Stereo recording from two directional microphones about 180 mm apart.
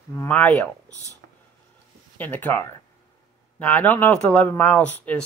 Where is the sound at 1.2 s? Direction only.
65° right (ahead or behind).